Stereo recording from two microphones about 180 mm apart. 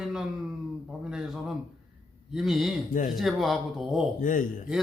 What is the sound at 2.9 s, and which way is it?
Speech, 50° left (ahead or behind).